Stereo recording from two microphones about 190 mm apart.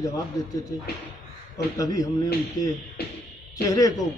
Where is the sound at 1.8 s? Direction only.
20° left (ahead or behind).